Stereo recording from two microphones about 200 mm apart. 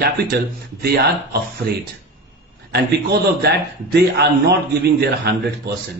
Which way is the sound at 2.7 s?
55° right (ahead or behind).